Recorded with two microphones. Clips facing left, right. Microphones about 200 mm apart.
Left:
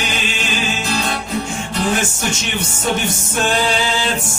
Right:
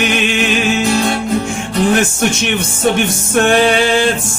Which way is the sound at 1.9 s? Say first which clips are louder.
Right 7 dB; 60° right (ahead or behind).